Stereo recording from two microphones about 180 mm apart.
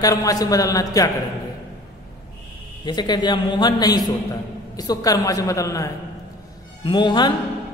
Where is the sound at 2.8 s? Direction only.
25° left (ahead or behind).